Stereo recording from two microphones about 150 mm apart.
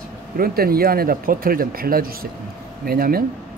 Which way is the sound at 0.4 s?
90° right.